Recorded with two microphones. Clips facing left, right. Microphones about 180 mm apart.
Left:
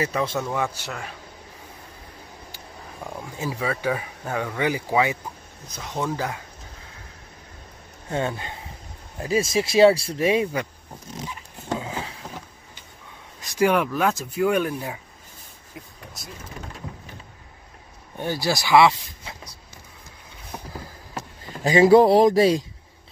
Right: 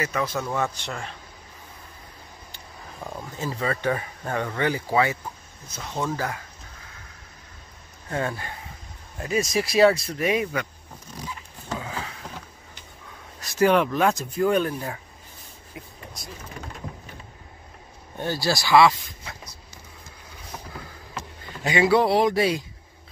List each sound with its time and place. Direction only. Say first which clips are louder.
0.0 s speech: left 2 dB; 25° left (ahead or behind)
0.4 s speech: left 1 dB; 10° left (ahead or behind)
2.5 s speech: even; 5° left (ahead or behind)
8.1 s speech: left 2 dB; 20° left (ahead or behind)
11.7 s a sound: left 3 dB; 25° left (ahead or behind)
13.4 s speech: right 1 dB; 15° left (ahead or behind)
15.7 s a sound: even; centre (ahead or behind)
18.1 s speech: left 1 dB; 15° left (ahead or behind)
20.7 s a sound: left 2 dB; 35° left (ahead or behind)